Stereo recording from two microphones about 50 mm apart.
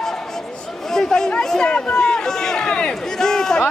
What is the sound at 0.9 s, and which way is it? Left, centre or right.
Chatter, centre.